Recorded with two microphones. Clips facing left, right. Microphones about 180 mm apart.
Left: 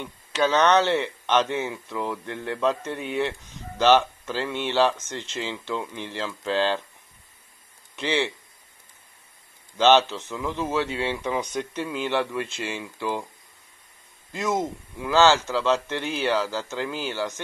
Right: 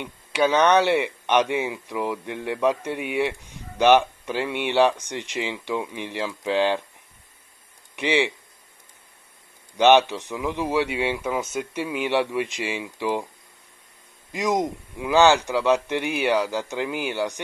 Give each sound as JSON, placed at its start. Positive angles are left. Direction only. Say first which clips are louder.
{"t": 0.0, "sound": "speech", "louder": "right 2 dB", "side_deg": -10}
{"t": 7.9, "sound": "speech", "louder": "right 3 dB", "side_deg": -15}
{"t": 9.8, "sound": "speech", "louder": "right 2 dB", "side_deg": -15}
{"t": 14.3, "sound": "speech", "louder": "right 3 dB", "side_deg": -15}